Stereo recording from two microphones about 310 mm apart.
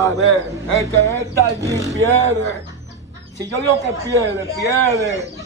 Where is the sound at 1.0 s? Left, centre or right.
Centre.